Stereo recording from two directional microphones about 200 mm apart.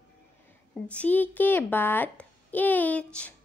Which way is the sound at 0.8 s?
5° left (ahead or behind).